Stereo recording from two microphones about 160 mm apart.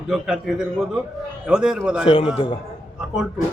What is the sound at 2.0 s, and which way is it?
Speech, 35° left (ahead or behind).